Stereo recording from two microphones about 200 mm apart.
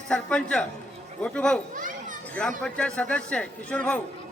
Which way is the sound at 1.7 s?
40° right (ahead or behind).